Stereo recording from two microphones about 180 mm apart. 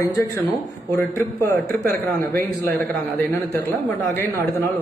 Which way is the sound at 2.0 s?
10° left (ahead or behind).